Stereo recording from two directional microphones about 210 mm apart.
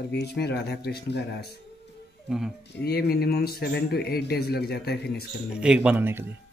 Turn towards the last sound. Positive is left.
turn(degrees=-10)  # may be behind; listen again after turning